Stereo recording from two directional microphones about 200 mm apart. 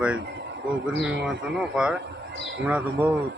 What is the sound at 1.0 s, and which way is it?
Speech, centre (ahead or behind).